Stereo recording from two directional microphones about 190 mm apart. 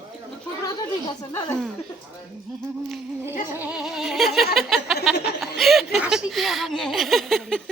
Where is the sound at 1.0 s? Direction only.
15° left (ahead or behind).